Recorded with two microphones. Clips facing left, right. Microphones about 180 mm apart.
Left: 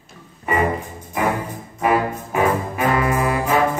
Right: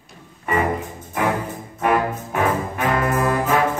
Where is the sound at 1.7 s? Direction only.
10° left (ahead or behind).